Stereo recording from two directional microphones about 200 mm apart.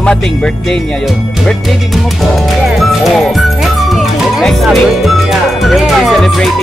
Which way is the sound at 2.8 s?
Centre (ahead or behind).